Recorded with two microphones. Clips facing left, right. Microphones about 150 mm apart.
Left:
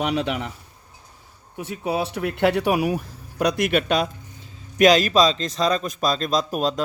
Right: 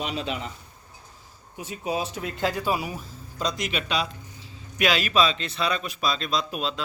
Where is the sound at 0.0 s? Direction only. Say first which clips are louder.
Left 6 dB; 70° left (ahead or behind).